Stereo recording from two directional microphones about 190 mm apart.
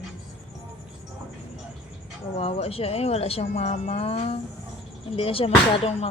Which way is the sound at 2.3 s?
30° left (ahead or behind).